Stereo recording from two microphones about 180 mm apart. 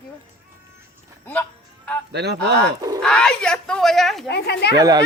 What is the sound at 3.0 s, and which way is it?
Speech, 5° left (ahead or behind).